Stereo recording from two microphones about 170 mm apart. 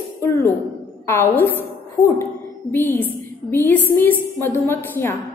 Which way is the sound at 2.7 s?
10° left (ahead or behind).